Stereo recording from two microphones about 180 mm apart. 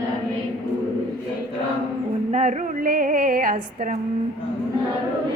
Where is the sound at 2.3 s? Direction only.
40° right (ahead or behind).